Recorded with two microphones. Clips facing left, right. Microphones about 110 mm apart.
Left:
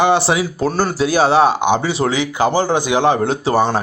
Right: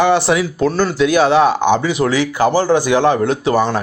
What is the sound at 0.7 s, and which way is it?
Speech, 45° left (ahead or behind).